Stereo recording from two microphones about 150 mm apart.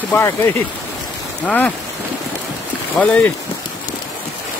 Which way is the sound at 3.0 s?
10° left (ahead or behind).